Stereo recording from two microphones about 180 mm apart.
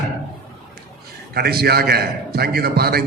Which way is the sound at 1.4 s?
60° right (ahead or behind).